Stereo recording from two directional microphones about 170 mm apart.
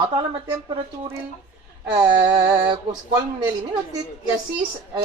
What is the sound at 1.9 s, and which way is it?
Speech, 25° right (ahead or behind).